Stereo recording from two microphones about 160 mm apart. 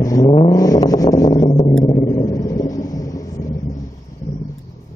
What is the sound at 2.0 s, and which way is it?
Vehicle, 25° left (ahead or behind).